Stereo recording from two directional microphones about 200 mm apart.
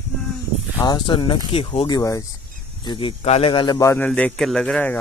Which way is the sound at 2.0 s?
15° left (ahead or behind).